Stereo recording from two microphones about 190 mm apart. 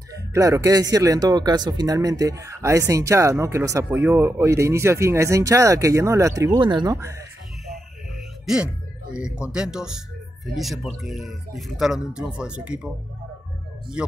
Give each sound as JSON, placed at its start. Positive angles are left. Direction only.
{"t": 0.1, "sound": "speech", "side_deg": -15}
{"t": 9.1, "sound": "speech", "side_deg": -5}